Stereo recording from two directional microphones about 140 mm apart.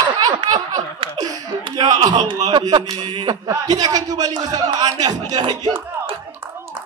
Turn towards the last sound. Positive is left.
turn(degrees=-35)  # may be behind; listen again after turning